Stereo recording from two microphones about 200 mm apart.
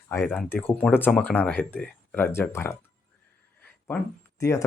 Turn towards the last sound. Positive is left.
turn(degrees=15)  # may be behind; listen again after turning